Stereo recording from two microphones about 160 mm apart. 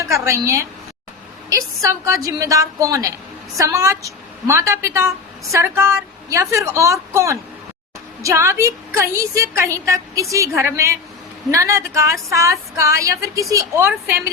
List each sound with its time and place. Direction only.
0.0 s a woman's voice: 20° right (ahead or behind)